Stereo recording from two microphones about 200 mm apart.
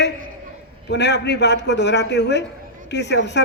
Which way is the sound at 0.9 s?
60° left (ahead or behind).